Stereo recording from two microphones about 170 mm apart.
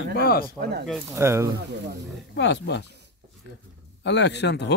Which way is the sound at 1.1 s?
15° right (ahead or behind).